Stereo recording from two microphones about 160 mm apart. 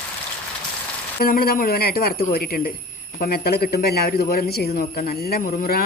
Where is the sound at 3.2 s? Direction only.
75° left (ahead or behind).